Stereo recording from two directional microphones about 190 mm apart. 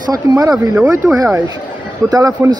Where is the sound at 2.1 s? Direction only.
20° right (ahead or behind).